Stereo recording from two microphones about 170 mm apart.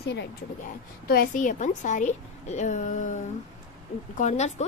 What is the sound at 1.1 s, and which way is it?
A woman's voice, 55° left (ahead or behind).